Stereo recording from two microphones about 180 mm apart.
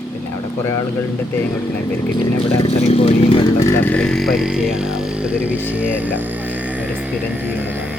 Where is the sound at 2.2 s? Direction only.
30° left (ahead or behind).